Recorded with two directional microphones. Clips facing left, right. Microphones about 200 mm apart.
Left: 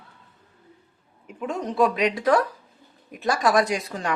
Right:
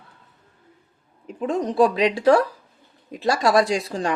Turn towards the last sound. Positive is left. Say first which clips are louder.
# right 3 dB
turn(degrees=-30)  # may be behind; listen again after turning